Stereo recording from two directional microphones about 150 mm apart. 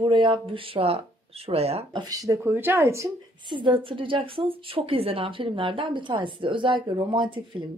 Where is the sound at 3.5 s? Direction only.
35° right (ahead or behind).